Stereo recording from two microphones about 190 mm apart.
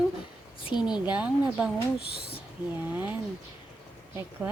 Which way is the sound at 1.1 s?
10° right (ahead or behind).